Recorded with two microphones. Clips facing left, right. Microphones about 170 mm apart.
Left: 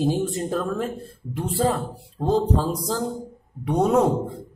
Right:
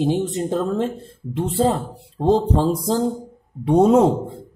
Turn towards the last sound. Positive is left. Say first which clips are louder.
# right 5 dB
turn(degrees=-25)  # may be behind; listen again after turning